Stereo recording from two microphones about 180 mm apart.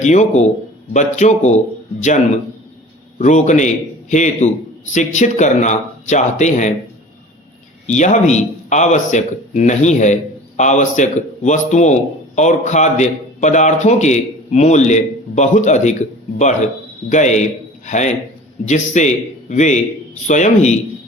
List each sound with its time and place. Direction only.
0.0 s a man's voice: 40° left (ahead or behind)
7.9 s a man's voice: 40° left (ahead or behind)